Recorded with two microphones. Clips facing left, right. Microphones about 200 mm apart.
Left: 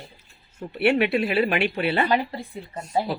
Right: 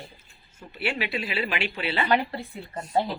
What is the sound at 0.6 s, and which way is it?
Speech, 60° left (ahead or behind).